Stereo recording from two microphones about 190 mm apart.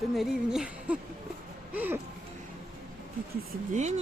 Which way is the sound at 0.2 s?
5° right (ahead or behind).